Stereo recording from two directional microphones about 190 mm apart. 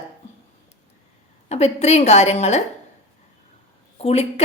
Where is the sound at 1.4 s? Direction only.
35° left (ahead or behind).